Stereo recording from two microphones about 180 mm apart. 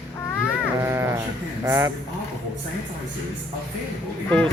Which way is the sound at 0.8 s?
15° right (ahead or behind).